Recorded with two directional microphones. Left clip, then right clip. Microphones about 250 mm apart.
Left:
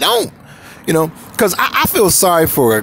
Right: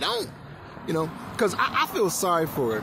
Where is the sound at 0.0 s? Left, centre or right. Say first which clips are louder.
Left 13 dB; left.